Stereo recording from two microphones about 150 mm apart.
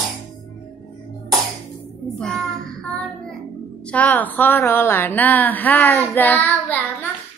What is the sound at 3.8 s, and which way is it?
A woman's voice, 10° left (ahead or behind).